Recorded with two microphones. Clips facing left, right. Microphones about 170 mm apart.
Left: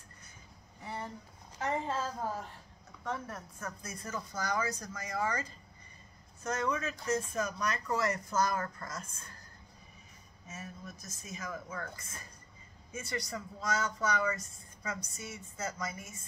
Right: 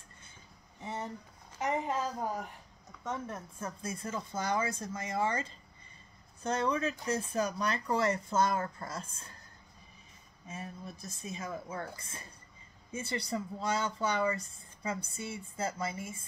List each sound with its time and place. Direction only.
0.7 s a sound: 20° right (ahead or behind)
1.6 s a woman's voice: 15° right (ahead or behind)
10.5 s speech: 30° right (ahead or behind)